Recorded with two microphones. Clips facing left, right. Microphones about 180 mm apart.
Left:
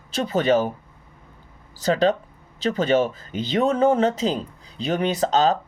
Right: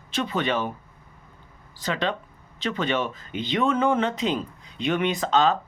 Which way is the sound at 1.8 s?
40° left (ahead or behind).